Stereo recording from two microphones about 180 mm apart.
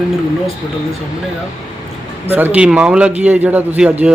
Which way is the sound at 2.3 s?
10° right (ahead or behind).